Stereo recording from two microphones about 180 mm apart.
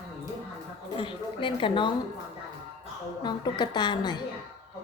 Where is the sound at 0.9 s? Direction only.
30° left (ahead or behind).